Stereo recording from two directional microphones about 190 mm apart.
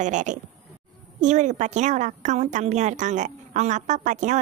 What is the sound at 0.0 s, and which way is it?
A woman's voice, 40° right (ahead or behind).